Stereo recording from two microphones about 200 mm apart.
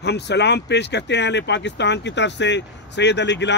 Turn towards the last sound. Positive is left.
turn(degrees=60)  # may be behind; listen again after turning